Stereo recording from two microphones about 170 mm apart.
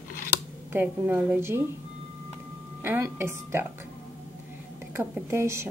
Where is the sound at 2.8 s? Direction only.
15° right (ahead or behind).